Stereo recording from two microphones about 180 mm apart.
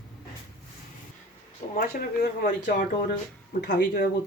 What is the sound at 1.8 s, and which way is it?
Speech, 55° left (ahead or behind).